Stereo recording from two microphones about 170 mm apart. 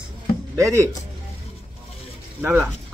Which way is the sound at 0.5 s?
20° right (ahead or behind).